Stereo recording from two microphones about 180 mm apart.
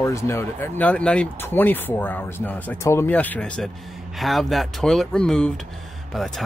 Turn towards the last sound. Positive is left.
turn(degrees=0)  # may be behind; listen again after turning